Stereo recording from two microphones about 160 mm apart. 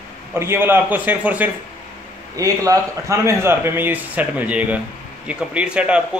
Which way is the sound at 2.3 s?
20° right (ahead or behind).